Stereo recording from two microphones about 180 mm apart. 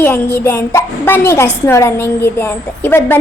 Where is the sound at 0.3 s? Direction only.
15° left (ahead or behind).